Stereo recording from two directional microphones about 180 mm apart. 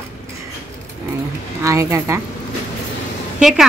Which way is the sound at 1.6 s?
15° right (ahead or behind).